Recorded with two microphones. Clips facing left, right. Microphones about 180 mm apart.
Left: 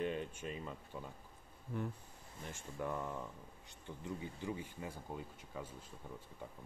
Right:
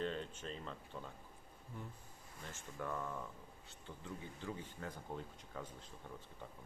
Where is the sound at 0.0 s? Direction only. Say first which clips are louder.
Left 2 dB; 15° left (ahead or behind).